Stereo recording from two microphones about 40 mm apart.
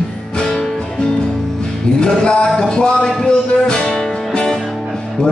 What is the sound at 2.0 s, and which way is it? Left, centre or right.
Music, left.